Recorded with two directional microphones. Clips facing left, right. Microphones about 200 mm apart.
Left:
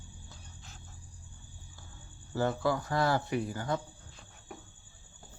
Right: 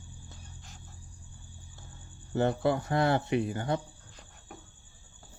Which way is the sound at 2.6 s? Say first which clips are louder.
Right 3 dB; 25° right (ahead or behind).